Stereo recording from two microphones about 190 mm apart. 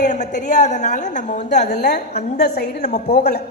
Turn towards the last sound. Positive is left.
turn(degrees=60)  # may be behind; listen again after turning